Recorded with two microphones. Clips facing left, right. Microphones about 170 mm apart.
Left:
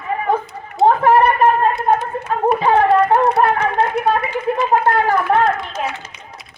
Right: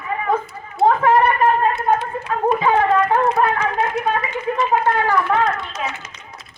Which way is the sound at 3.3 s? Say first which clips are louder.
Left 3 dB; 65° left (ahead or behind).